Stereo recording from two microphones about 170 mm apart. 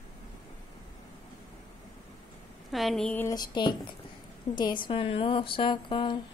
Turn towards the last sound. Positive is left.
turn(degrees=25)  # may be behind; listen again after turning